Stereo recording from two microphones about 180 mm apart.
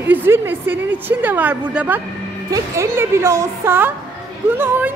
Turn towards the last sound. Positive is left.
turn(degrees=-10)  # may be behind; listen again after turning